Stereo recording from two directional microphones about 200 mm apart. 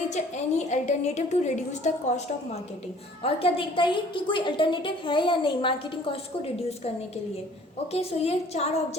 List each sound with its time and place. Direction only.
0.1 s a woman's voice: 35° left (ahead or behind)
3.2 s a woman's voice: 30° left (ahead or behind)
7.9 s a woman's voice: 30° left (ahead or behind)